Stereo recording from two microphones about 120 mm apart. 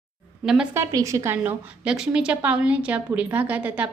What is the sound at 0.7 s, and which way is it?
Speech, 25° right (ahead or behind).